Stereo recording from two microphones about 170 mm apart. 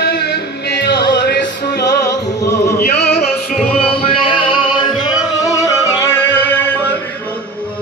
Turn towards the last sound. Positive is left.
turn(degrees=15)  # may be behind; listen again after turning